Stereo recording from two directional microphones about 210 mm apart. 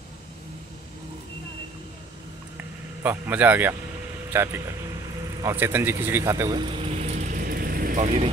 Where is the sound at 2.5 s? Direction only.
10° right (ahead or behind).